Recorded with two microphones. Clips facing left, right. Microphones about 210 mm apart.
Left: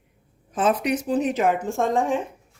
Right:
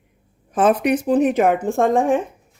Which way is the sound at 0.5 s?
55° right (ahead or behind).